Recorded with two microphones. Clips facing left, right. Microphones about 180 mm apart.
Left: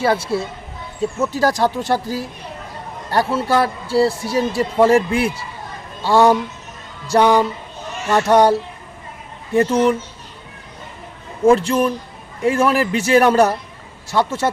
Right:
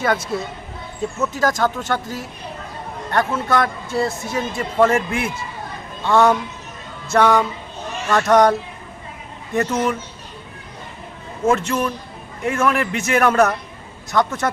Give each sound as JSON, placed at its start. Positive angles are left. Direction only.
{"t": 0.0, "sound": "speech", "side_deg": 30}
{"t": 9.6, "sound": "speech", "side_deg": 30}
{"t": 11.4, "sound": "speech", "side_deg": 30}